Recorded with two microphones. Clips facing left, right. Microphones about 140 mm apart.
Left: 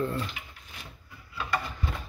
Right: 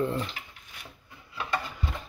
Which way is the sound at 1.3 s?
25° right (ahead or behind).